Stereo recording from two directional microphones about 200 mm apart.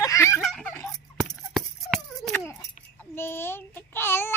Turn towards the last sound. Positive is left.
turn(degrees=10)  # may be behind; listen again after turning